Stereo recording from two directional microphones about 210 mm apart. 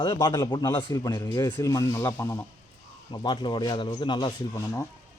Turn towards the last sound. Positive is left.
turn(degrees=15)  # may be behind; listen again after turning